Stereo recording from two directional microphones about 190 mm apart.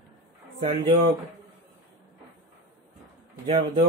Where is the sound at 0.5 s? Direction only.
30° right (ahead or behind).